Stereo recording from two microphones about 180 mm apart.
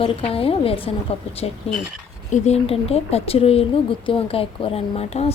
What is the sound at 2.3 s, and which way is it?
Speech, 35° left (ahead or behind).